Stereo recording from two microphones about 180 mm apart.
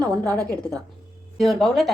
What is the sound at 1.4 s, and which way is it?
Speech, centre (ahead or behind).